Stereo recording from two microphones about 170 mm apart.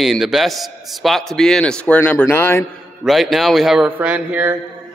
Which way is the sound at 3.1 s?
Centre (ahead or behind).